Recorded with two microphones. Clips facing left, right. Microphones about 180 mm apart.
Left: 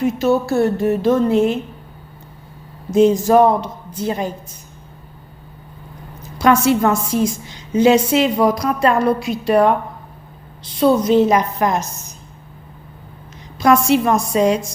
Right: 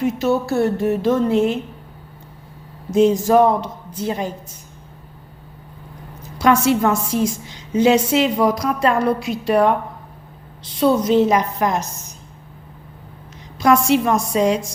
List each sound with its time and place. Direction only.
0.0 s speech: 40° left (ahead or behind)
2.9 s a woman's voice: 45° left (ahead or behind)
6.4 s a woman's voice: 45° left (ahead or behind)
10.8 s a woman's voice: 45° left (ahead or behind)
13.6 s a woman's voice: 50° left (ahead or behind)